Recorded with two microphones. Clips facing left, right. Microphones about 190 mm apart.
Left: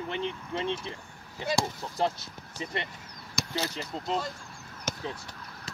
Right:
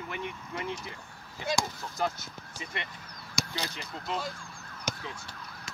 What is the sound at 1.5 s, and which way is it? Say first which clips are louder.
Emergency vehicle: left 2 dB; 30° left (ahead or behind).